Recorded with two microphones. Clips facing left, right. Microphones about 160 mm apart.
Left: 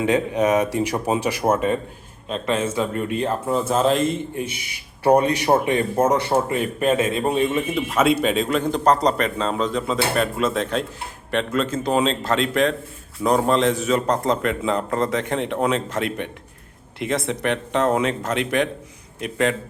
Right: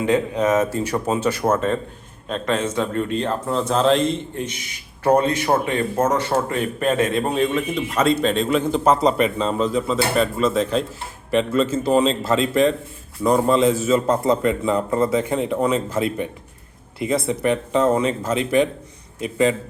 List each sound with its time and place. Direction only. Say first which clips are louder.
0.0 s speech: even; 20° left (ahead or behind); by 15.7 s centre (ahead or behind)
16.0 s a man's voice: right 3 dB; 70° left (ahead or behind)
17.0 s speech: right 3 dB; centre (ahead or behind)
19.2 s speech: right 3 dB; centre (ahead or behind)